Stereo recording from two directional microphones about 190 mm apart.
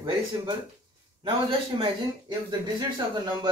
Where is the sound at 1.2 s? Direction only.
25° right (ahead or behind).